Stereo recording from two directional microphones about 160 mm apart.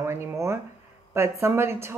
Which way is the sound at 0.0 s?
15° right (ahead or behind).